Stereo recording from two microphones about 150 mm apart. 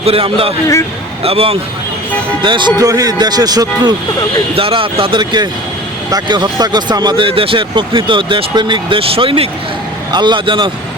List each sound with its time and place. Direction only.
0.0 s speech: 40° right (ahead or behind)
4.5 s speech: 35° right (ahead or behind)